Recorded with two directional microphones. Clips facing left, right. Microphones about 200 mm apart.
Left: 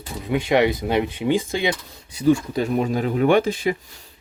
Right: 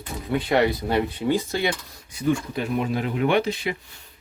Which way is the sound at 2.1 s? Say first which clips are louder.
Left 5 dB; 35° left (ahead or behind).